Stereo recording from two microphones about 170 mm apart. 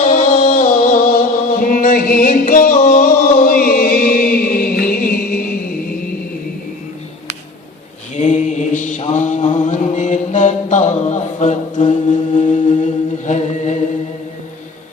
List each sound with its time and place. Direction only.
0.0 s music: 55° left (ahead or behind)
8.1 s mantra: 45° left (ahead or behind)